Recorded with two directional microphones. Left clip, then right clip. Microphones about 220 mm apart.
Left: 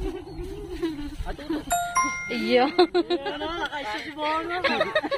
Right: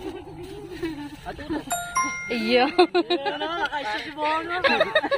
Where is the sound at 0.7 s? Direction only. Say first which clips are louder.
Left 1 dB; 45° left (ahead or behind).